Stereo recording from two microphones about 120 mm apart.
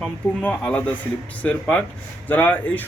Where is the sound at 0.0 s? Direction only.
10° left (ahead or behind).